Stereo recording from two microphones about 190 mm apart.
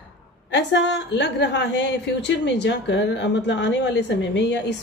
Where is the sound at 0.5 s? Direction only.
65° left (ahead or behind).